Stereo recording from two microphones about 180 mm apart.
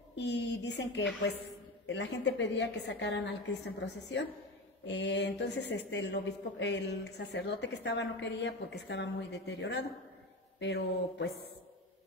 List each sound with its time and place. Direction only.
0.1 s speech: 70° left (ahead or behind)
1.9 s a woman's voice: 85° left